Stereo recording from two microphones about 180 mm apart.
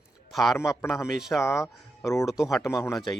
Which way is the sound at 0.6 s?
15° left (ahead or behind).